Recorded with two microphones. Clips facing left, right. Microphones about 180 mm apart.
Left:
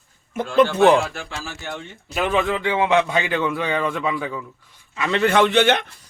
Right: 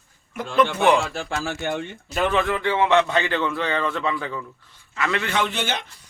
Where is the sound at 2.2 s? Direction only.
10° left (ahead or behind).